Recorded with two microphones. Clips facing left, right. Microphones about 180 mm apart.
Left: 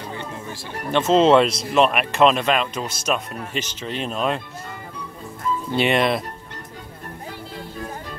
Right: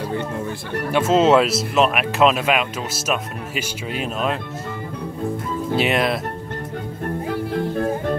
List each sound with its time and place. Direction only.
0.9 s speech: 5° right (ahead or behind)
5.8 s speech: centre (ahead or behind)
7.2 s music: 60° right (ahead or behind)